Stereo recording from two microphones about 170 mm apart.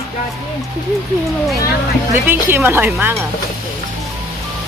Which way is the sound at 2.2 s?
10° right (ahead or behind).